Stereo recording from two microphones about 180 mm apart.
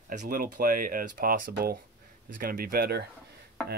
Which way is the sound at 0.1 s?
50° right (ahead or behind).